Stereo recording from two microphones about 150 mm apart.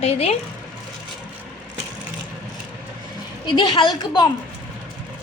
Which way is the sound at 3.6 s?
30° left (ahead or behind).